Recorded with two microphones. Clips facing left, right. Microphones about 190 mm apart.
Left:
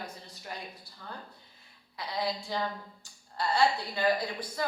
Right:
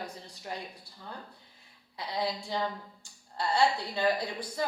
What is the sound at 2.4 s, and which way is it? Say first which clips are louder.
A woman's voice: right 1 dB; 20° right (ahead or behind).